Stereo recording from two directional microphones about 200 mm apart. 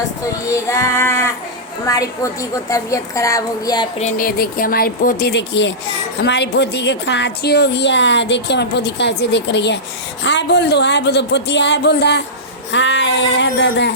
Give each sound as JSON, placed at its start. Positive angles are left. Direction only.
{"t": 0.5, "sound": "a woman's voice", "side_deg": 15}
{"t": 3.9, "sound": "a woman's voice", "side_deg": 40}